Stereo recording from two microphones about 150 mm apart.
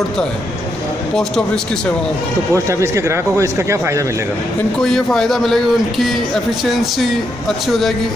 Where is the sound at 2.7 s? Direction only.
20° right (ahead or behind).